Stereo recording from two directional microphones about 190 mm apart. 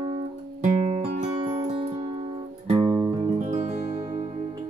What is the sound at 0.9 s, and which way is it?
Music, 35° right (ahead or behind).